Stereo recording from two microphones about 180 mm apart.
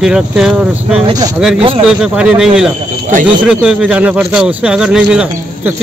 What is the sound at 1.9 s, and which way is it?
Speech, 5° right (ahead or behind).